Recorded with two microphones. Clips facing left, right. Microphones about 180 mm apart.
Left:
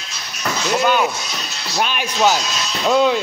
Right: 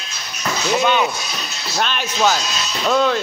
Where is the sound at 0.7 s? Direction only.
5° left (ahead or behind).